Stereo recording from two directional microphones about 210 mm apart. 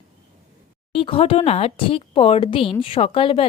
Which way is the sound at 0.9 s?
25° left (ahead or behind).